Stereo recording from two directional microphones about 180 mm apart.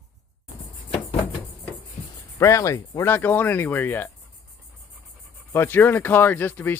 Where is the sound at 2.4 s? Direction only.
15° left (ahead or behind).